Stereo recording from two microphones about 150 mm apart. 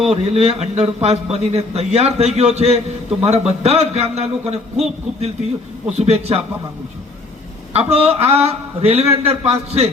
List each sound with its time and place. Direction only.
0.1 s a man's voice: 45° right (ahead or behind)
7.7 s a man's voice: 45° right (ahead or behind)